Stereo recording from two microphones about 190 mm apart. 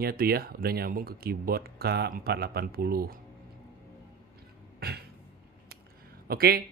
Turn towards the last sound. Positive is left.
turn(degrees=-50)  # may be behind; listen again after turning